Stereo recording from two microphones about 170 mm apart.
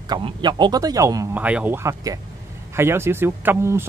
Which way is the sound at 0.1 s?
25° right (ahead or behind).